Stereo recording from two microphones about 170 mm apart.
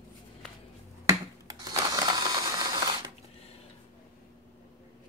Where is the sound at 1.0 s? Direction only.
20° right (ahead or behind).